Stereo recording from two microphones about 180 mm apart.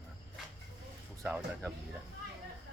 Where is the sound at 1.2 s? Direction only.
10° right (ahead or behind).